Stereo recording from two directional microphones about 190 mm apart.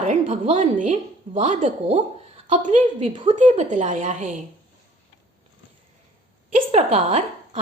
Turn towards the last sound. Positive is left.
turn(degrees=-35)  # may be behind; listen again after turning